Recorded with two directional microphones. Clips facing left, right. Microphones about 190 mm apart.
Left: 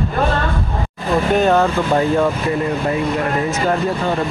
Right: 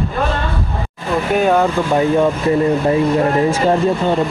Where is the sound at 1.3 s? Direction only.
10° right (ahead or behind).